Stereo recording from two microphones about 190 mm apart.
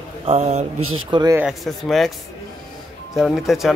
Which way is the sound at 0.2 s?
35° right (ahead or behind).